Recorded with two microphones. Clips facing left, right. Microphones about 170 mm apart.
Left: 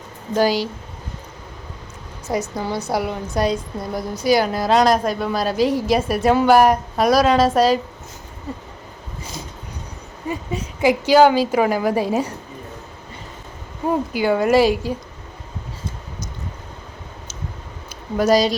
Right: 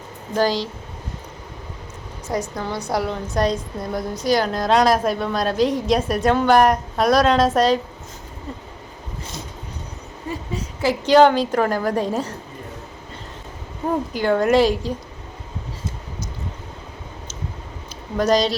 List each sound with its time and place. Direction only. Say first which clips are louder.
0.3 s a woman's voice: left 2 dB; 10° left (ahead or behind)
2.3 s a woman's voice: left 2 dB; 10° left (ahead or behind)
10.2 s a sound: left 3 dB; 15° left (ahead or behind)
11.0 s a woman's voice: right 1 dB; 5° left (ahead or behind)
14.1 s a woman's voice: even; 5° left (ahead or behind)
18.2 s a woman's voice: left 2 dB; 5° left (ahead or behind)